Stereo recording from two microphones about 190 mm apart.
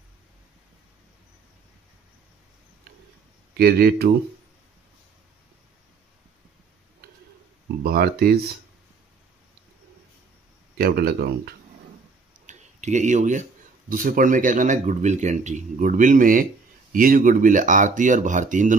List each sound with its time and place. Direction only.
3.5 s speech: 55° right (ahead or behind)
7.8 s speech: 50° right (ahead or behind)
10.8 s speech: 55° right (ahead or behind)
12.4 s speech: 40° right (ahead or behind)